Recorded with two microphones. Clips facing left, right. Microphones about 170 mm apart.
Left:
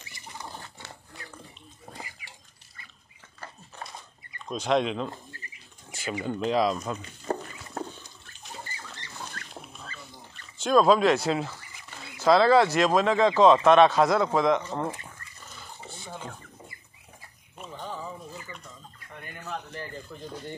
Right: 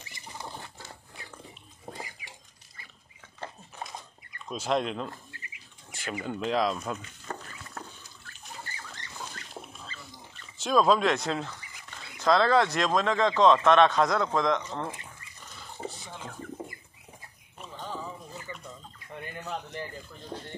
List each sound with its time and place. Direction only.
1.9 s dishes: 20° right (ahead or behind)
4.5 s speech: 5° right (ahead or behind)
5.3 s water: 40° left (ahead or behind)
5.9 s a sound: centre (ahead or behind)
6.5 s speech: centre (ahead or behind)
7.3 s a sound: 35° left (ahead or behind)
7.8 s water: 30° left (ahead or behind)
9.3 s dog: 15° right (ahead or behind)
10.6 s speech: centre (ahead or behind)
19.4 s a sound: 20° right (ahead or behind)